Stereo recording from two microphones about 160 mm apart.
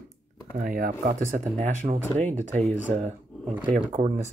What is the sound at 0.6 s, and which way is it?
Speech, 60° right (ahead or behind).